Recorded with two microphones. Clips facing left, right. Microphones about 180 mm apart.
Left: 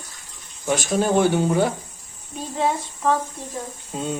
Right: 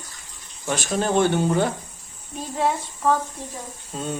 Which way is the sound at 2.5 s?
5° right (ahead or behind).